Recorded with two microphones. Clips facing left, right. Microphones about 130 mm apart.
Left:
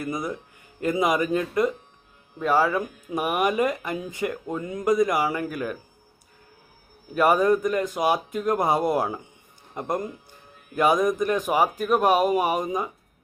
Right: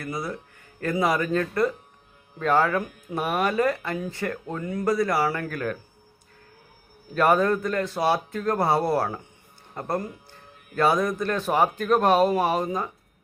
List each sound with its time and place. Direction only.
0.0 s speech: 20° left (ahead or behind)
7.1 s speech: 10° left (ahead or behind)